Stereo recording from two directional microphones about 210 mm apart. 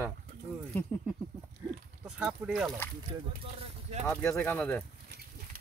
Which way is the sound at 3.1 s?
25° right (ahead or behind).